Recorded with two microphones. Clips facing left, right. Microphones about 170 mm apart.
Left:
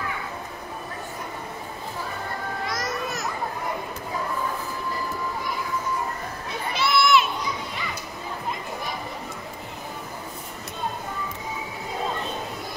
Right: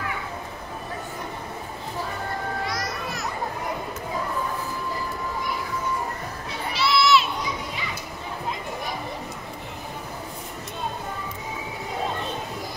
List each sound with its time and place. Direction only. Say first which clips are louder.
2.7 s children playing: left 1 dB; 45° left (ahead or behind)
6.7 s crowd: even; 50° left (ahead or behind)